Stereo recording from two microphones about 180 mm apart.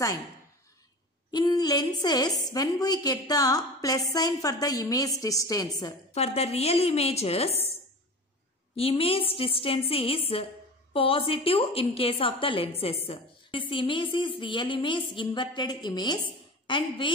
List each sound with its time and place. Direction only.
1.3 s a woman's voice: 20° left (ahead or behind)
6.1 s a woman's voice: 35° left (ahead or behind)
8.7 s a woman's voice: 30° left (ahead or behind)